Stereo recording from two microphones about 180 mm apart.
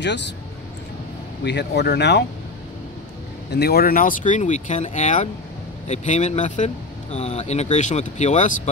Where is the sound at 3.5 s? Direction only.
60° left (ahead or behind).